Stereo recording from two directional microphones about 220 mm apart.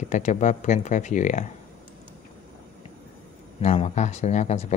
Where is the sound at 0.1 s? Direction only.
35° left (ahead or behind).